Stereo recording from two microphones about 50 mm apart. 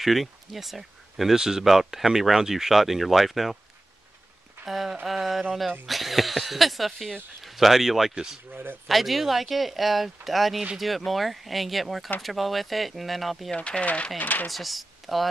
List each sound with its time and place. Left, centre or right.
0.0 s speech: centre
4.6 s speech: centre
13.5 s speech: left
14.5 s speech: centre